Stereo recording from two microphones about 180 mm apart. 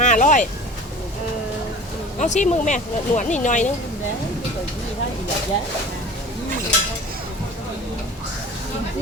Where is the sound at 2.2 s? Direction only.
40° left (ahead or behind).